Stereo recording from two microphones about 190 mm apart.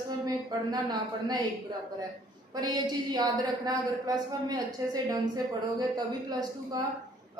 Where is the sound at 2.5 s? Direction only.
20° right (ahead or behind).